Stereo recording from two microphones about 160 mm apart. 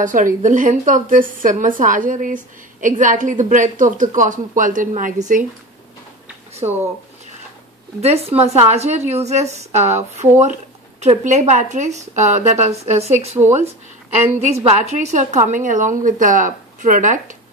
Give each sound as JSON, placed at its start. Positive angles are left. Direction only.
{"t": 0.0, "sound": "a woman's voice", "side_deg": -55}
{"t": 8.0, "sound": "a woman's voice", "side_deg": -40}